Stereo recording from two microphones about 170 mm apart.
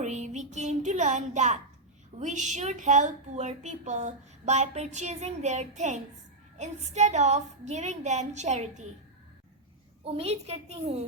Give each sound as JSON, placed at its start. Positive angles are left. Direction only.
{"t": 0.0, "sound": "a woman's voice", "side_deg": -45}
{"t": 10.0, "sound": "a woman's voice", "side_deg": -35}